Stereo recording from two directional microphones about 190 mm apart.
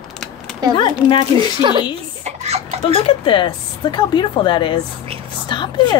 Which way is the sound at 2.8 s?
30° left (ahead or behind).